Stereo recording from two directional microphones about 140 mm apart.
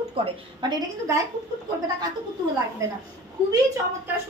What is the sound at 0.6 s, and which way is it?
Speech, 30° right (ahead or behind).